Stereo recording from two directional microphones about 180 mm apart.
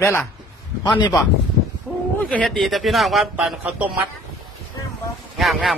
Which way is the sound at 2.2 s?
5° left (ahead or behind).